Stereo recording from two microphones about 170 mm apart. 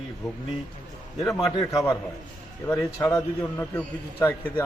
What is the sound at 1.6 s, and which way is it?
A man's voice, 20° left (ahead or behind).